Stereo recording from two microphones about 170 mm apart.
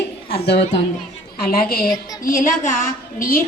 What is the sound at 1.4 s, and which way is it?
Music, 60° left (ahead or behind).